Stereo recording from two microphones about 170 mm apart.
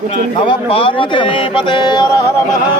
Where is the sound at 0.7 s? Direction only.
30° left (ahead or behind).